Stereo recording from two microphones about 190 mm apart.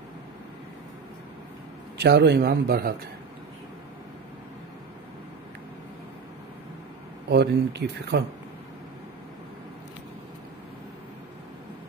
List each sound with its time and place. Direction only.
2.0 s speech: 65° right (ahead or behind)
7.2 s speech: 60° right (ahead or behind)